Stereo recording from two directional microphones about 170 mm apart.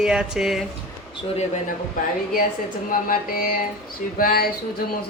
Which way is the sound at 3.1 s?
60° left (ahead or behind).